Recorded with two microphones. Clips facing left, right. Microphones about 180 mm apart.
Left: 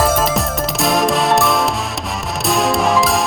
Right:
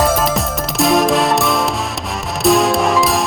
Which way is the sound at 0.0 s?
Centre (ahead or behind).